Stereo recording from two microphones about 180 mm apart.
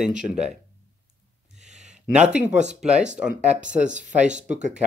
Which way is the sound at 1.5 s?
40° right (ahead or behind).